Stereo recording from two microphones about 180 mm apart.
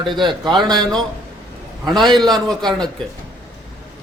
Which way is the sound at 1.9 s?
Centre (ahead or behind).